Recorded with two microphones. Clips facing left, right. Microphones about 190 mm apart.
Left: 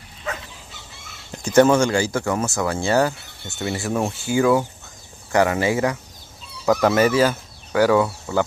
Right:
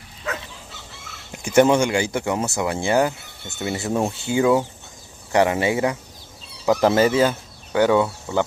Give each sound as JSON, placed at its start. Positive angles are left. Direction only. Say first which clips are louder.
{"t": 1.3, "sound": "speech", "louder": "left 1 dB", "side_deg": -10}